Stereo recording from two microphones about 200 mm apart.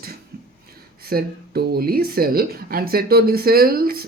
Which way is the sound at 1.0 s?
50° right (ahead or behind).